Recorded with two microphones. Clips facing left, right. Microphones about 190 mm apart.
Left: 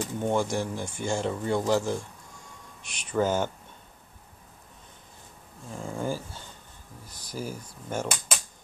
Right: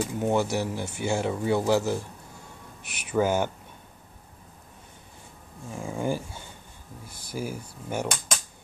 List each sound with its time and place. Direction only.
0.0 s speech: 5° right (ahead or behind)
2.8 s speech: 60° right (ahead or behind)
3.1 s speech: 10° right (ahead or behind)
5.7 s speech: 10° right (ahead or behind)
7.1 s speech: 55° right (ahead or behind)
7.3 s speech: 10° right (ahead or behind)